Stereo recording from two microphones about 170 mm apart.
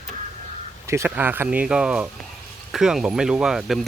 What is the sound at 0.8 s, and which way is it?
Speech, 15° right (ahead or behind).